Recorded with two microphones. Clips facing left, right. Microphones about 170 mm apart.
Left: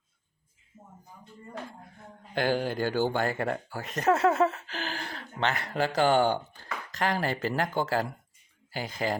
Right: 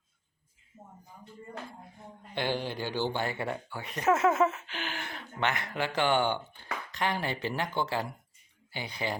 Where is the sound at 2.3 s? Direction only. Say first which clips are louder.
Left 5 dB; 45° left (ahead or behind).